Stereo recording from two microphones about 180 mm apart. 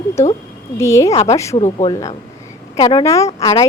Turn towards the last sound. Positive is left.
turn(degrees=20)  # may be behind; listen again after turning